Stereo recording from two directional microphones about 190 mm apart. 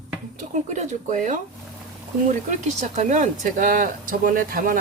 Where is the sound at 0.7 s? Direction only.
40° right (ahead or behind).